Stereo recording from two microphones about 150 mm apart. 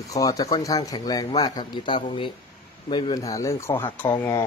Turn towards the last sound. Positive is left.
turn(degrees=10)  # may be behind; listen again after turning